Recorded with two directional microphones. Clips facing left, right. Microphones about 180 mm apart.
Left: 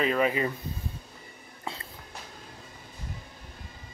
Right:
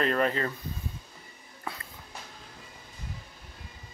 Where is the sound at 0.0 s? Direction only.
5° left (ahead or behind).